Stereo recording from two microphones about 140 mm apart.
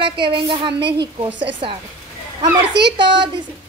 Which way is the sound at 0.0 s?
35° right (ahead or behind).